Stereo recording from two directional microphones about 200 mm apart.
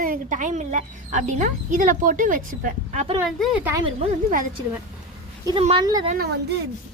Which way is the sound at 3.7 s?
25° right (ahead or behind).